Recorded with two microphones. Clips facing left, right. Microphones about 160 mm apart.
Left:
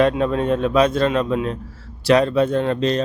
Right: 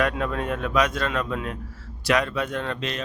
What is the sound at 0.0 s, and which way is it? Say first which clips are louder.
Speech: left 7 dB; 30° left (ahead or behind).